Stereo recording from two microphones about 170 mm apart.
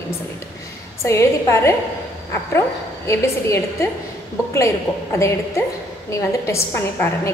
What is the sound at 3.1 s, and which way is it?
A woman's voice, 15° left (ahead or behind).